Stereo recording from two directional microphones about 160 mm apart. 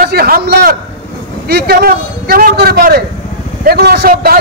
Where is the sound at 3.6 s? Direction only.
90° right; by 4.4 s 70° right (ahead or behind).